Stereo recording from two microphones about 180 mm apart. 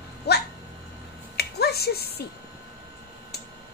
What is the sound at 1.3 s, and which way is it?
Finger snapping, 60° left (ahead or behind).